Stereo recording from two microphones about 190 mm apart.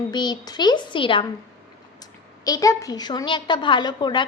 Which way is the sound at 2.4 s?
20° left (ahead or behind).